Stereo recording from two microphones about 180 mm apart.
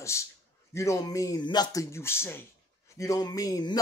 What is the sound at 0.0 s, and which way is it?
A man's voice, 15° left (ahead or behind).